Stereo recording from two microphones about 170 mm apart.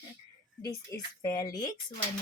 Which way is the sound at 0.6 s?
20° left (ahead or behind).